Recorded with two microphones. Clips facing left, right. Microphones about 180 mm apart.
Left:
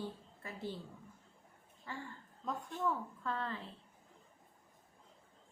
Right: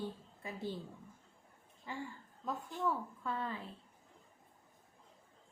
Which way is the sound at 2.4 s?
Centre (ahead or behind).